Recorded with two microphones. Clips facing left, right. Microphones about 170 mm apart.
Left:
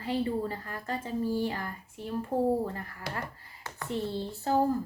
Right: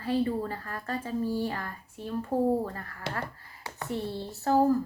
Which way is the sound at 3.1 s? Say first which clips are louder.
Right 3 dB; 25° right (ahead or behind).